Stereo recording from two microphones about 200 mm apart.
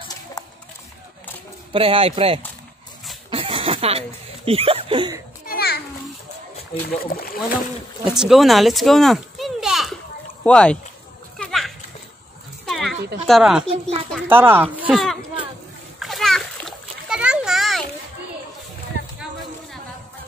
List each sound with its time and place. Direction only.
1.7 s a man's voice: 25° right (ahead or behind)
3.3 s a sound: 25° right (ahead or behind)
4.5 s a man's voice: 30° right (ahead or behind)
5.5 s a sound: 50° left (ahead or behind)
7.0 s speech: 50° left (ahead or behind)
8.0 s a child's voice: 5° right (ahead or behind)
11.3 s a sound: centre (ahead or behind)
12.6 s goat: centre (ahead or behind)
13.3 s speech: 5° right (ahead or behind)
13.7 s a man's voice: 30° right (ahead or behind)
14.2 s speech: 10° right (ahead or behind)
16.0 s splash: centre (ahead or behind)